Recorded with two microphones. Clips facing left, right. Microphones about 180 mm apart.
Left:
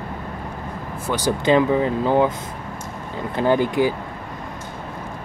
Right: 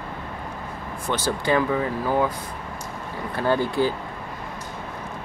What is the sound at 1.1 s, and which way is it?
Speech, 15° left (ahead or behind).